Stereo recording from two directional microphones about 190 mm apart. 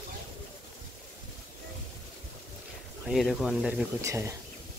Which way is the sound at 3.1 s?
Centre (ahead or behind).